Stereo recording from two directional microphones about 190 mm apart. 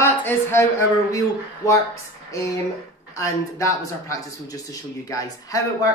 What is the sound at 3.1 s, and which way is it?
Speech, 15° left (ahead or behind).